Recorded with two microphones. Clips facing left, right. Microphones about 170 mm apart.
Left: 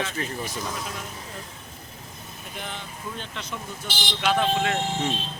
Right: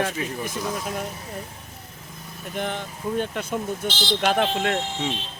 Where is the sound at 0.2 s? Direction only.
10° right (ahead or behind).